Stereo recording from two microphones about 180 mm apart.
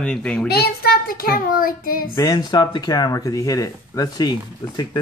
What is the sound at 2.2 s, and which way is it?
Speech, 20° left (ahead or behind).